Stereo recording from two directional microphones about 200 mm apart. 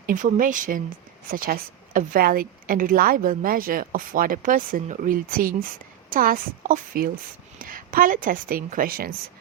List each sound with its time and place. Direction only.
0.0 s speech: 40° right (ahead or behind)